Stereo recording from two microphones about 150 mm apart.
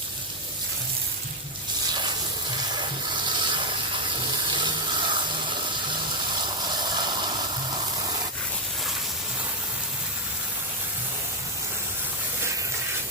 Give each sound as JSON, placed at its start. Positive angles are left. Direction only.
{"t": 3.3, "sound": "gush", "side_deg": -30}
{"t": 4.5, "sound": "water", "side_deg": -30}
{"t": 6.7, "sound": "a sound", "side_deg": -30}